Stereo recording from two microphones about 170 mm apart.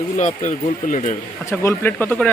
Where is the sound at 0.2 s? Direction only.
45° left (ahead or behind).